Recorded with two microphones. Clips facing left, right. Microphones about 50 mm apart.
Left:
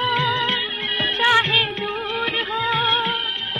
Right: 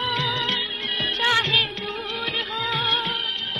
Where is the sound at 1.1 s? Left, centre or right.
Left.